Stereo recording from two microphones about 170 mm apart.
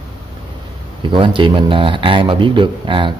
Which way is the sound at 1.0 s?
30° right (ahead or behind).